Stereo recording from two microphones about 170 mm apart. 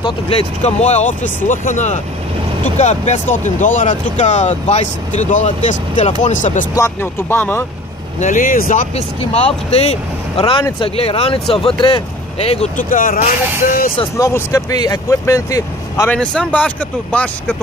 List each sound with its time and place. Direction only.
0.6 s speech: 40° left (ahead or behind)
6.7 s speech: 15° left (ahead or behind)
8.2 s speech: 50° left (ahead or behind)
8.9 s speech: 40° left (ahead or behind)
12.9 s speech: 55° left (ahead or behind)
14.1 s speech: 20° left (ahead or behind)
16.2 s speech: 5° left (ahead or behind)